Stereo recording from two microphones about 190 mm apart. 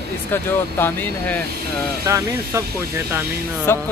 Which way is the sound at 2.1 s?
15° right (ahead or behind).